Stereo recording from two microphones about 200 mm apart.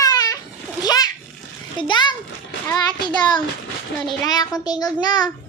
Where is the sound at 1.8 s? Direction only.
25° left (ahead or behind).